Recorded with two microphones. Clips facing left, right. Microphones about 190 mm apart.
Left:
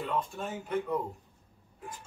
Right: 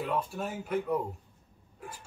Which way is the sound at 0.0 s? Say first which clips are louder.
Right 1 dB; 10° right (ahead or behind).